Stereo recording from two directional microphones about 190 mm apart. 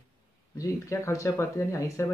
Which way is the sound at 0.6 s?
15° left (ahead or behind).